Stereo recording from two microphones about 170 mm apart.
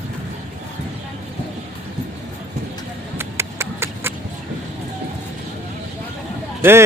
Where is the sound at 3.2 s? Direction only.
15° right (ahead or behind).